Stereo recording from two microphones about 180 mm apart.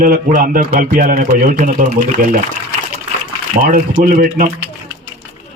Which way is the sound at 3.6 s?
50° right (ahead or behind).